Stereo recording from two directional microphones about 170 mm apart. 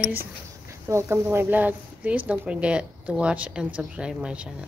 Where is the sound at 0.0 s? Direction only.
15° right (ahead or behind).